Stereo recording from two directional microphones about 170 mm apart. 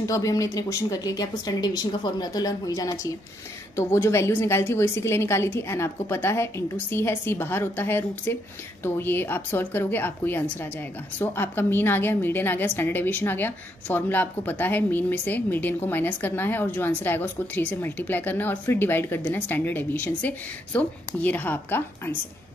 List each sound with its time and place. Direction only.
0.0 s a woman's voice: 20° left (ahead or behind)